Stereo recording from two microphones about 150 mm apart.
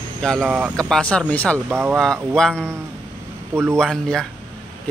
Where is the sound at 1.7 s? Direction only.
15° right (ahead or behind).